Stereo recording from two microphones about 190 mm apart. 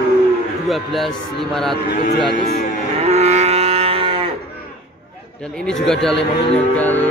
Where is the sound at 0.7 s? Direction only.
Centre (ahead or behind).